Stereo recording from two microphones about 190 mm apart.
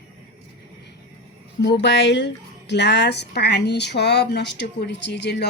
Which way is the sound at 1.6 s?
65° left (ahead or behind).